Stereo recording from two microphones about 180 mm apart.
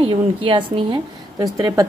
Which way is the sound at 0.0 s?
30° right (ahead or behind).